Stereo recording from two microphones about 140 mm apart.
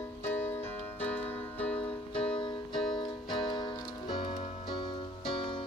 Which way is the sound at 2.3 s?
35° left (ahead or behind).